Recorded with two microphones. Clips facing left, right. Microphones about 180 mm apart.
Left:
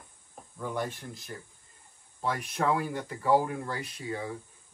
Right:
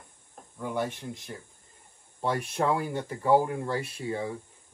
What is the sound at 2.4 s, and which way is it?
Speech, 25° right (ahead or behind).